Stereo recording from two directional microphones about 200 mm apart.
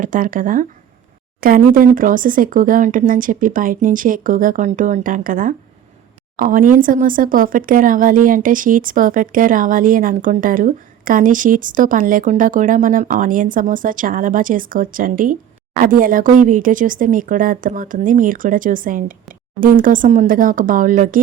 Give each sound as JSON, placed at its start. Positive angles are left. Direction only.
{"t": 0.0, "sound": "speech", "side_deg": -45}